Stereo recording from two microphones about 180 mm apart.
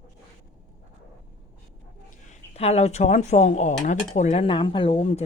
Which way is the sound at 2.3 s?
35° left (ahead or behind).